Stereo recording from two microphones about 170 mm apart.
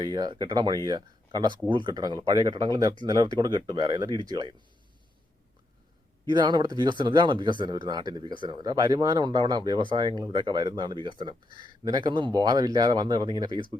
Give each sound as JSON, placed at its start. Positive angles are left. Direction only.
{"t": 0.0, "sound": "speech", "side_deg": -25}
{"t": 6.3, "sound": "speech", "side_deg": -25}